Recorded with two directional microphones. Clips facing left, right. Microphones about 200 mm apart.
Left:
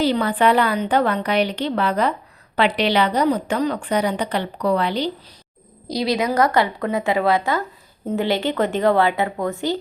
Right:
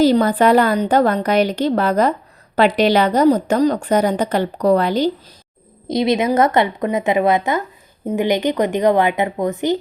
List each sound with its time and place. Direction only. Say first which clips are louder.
0.0 s a woman's voice: right 5 dB; 40° right (ahead or behind)
5.9 s a woman's voice: right 4 dB; 20° right (ahead or behind)